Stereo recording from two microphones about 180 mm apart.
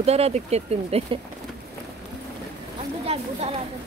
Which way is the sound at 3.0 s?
35° right (ahead or behind).